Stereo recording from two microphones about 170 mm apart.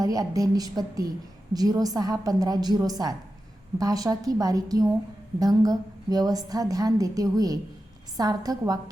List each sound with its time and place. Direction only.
0.0 s a woman's voice: 20° right (ahead or behind)